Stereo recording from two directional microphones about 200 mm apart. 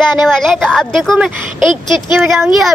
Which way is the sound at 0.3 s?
Centre (ahead or behind).